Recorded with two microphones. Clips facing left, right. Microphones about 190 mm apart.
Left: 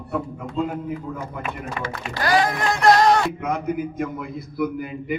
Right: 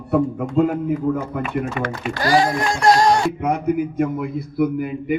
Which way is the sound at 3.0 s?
40° right (ahead or behind).